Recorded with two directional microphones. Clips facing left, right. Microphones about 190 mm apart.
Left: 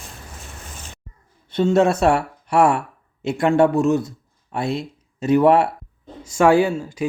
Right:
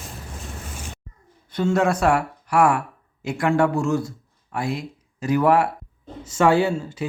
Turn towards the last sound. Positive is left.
turn(degrees=15)  # may be behind; listen again after turning